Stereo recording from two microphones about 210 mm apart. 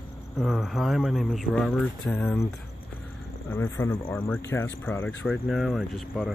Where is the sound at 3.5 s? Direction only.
15° left (ahead or behind).